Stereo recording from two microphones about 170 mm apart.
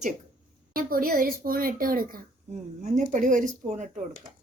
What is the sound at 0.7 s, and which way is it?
A woman's voice, 60° right (ahead or behind).